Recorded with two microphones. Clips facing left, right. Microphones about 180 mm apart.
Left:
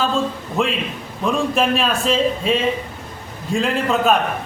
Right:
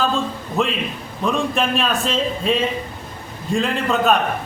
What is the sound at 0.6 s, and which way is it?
A man's voice, centre (ahead or behind).